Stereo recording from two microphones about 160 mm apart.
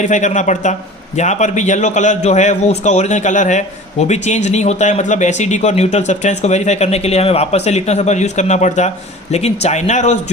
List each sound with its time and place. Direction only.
0.0 s a man's voice: 50° left (ahead or behind)